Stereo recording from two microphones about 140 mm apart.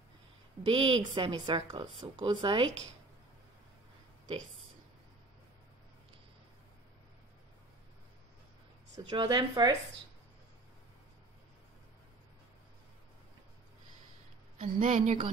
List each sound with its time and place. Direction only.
0.7 s a woman's voice: 35° right (ahead or behind)
8.9 s a woman's voice: 30° right (ahead or behind)
14.6 s speech: 60° right (ahead or behind)